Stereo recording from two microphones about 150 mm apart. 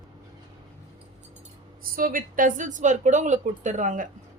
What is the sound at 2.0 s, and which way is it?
A woman's voice, 70° right (ahead or behind).